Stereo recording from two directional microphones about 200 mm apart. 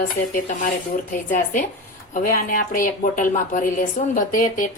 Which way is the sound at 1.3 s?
40° left (ahead or behind).